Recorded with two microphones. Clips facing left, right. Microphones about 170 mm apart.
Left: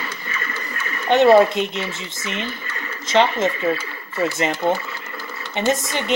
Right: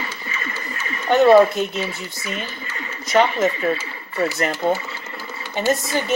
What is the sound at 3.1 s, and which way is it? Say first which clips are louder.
Speech: even; 25° left (ahead or behind).